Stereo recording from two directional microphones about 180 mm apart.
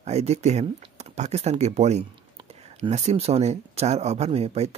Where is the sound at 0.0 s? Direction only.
35° right (ahead or behind).